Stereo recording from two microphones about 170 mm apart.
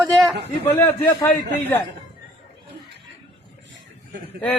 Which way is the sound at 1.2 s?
10° left (ahead or behind).